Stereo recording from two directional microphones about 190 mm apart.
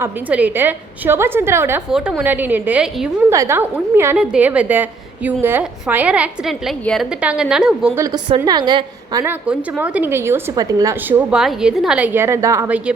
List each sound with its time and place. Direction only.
0.0 s a woman's voice: 10° right (ahead or behind)
1.9 s a woman's voice: 5° right (ahead or behind)
7.9 s a woman's voice: 20° right (ahead or behind)
9.5 s a woman's voice: 5° right (ahead or behind)
11.3 s a woman's voice: 5° right (ahead or behind)